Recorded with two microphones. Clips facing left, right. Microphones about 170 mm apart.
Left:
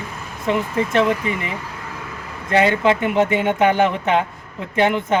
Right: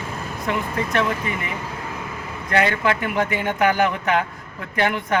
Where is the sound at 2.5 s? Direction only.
25° left (ahead or behind).